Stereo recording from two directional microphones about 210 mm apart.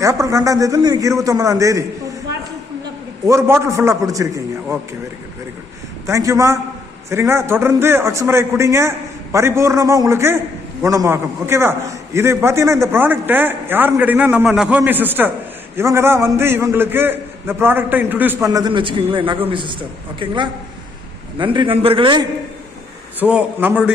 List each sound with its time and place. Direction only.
0.0 s a man's voice: 15° right (ahead or behind)
3.2 s a man's voice: 15° right (ahead or behind)
6.1 s a man's voice: 15° right (ahead or behind)
23.3 s a man's voice: 5° right (ahead or behind)